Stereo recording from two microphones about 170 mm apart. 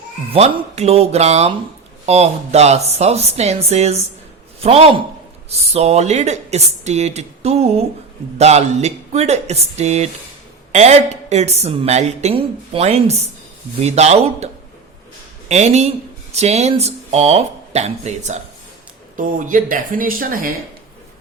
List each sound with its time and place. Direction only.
0.3 s a woman's voice: 40° right (ahead or behind); by 20.5 s 55° right (ahead or behind)